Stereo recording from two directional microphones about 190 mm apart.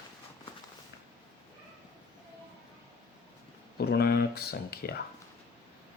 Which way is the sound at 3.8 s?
55° left (ahead or behind).